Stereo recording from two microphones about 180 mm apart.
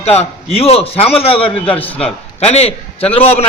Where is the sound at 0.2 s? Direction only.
35° left (ahead or behind).